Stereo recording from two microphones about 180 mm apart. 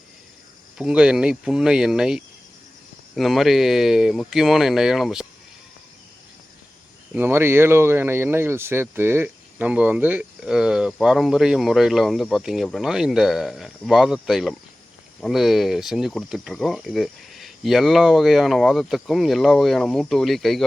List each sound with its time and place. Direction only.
0.8 s speech: 5° right (ahead or behind)
7.1 s speech: 10° right (ahead or behind)